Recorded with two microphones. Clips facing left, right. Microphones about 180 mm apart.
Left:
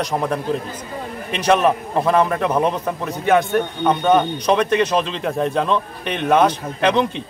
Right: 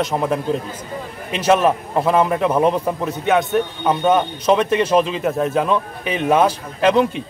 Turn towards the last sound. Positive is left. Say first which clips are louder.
# right 2 dB
turn(degrees=-5)  # may be behind; listen again after turning